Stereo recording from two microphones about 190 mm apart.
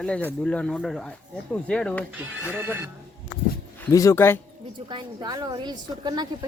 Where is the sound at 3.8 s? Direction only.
15° left (ahead or behind).